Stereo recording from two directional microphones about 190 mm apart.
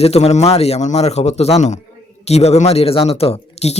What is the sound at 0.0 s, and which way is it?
A woman's voice, 35° left (ahead or behind).